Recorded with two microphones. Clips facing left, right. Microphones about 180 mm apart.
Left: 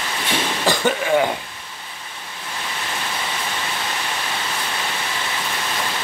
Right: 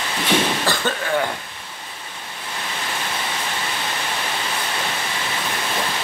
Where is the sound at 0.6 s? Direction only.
15° left (ahead or behind).